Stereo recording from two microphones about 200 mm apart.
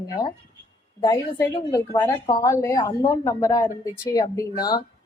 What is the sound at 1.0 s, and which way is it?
A woman's voice, 15° left (ahead or behind).